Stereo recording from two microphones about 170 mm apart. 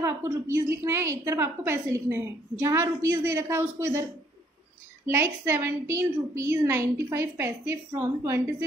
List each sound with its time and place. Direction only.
0.0 s a woman's voice: 15° right (ahead or behind)
5.0 s a woman's voice: 15° right (ahead or behind)